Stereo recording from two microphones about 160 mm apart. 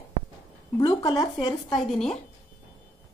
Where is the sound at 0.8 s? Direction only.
30° left (ahead or behind).